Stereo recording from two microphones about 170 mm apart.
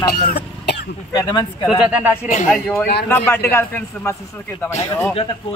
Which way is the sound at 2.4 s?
10° left (ahead or behind).